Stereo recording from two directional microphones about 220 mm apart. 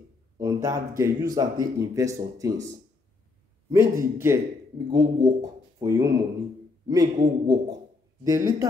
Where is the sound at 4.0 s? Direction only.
15° right (ahead or behind).